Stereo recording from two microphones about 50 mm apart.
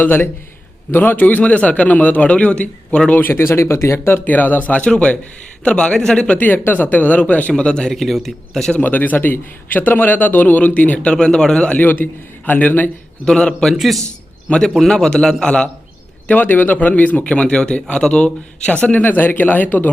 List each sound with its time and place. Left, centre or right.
0.0 s a man's voice: left
3.2 s speech: left
4.3 s a man's voice: left
6.4 s a man's voice: left
7.5 s a man's voice: centre
7.9 s a man's voice: centre
8.8 s a man's voice: left
11.1 s a man's voice: centre
11.7 s a man's voice: left
13.2 s a man's voice: centre
13.7 s a man's voice: centre
14.5 s a man's voice: left
14.8 s a man's voice: centre
16.2 s a man's voice: left